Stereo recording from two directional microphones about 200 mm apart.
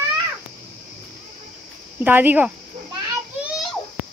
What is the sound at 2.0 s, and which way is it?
Speech, 10° right (ahead or behind).